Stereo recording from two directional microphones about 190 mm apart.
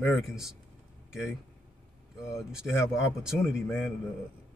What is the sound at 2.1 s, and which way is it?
Speech, 5° right (ahead or behind).